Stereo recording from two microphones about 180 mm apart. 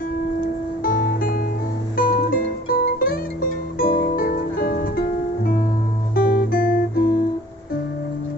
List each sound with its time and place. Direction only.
0.8 s music: 50° left (ahead or behind)
6.1 s guitar: 55° left (ahead or behind)